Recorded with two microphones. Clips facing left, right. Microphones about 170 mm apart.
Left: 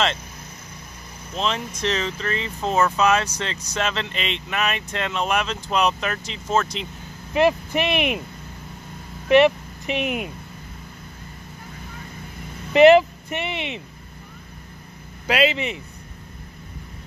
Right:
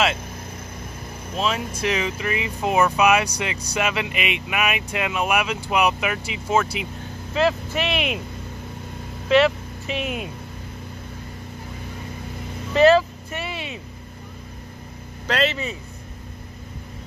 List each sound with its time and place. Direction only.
1.3 s speech: 5° right (ahead or behind)
7.3 s speech: 15° left (ahead or behind)
9.9 s speech: 60° left (ahead or behind)
12.7 s speech: 20° left (ahead or behind)
15.2 s speech: 10° left (ahead or behind)